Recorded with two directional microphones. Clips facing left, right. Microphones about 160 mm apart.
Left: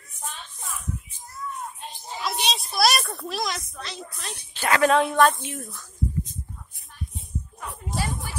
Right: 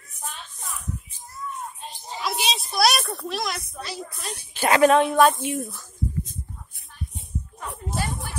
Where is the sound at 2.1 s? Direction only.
Centre (ahead or behind).